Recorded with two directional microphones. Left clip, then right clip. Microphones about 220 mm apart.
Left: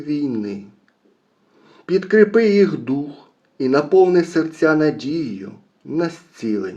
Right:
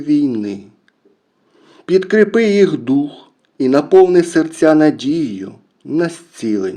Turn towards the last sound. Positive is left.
turn(degrees=-35)  # may be behind; listen again after turning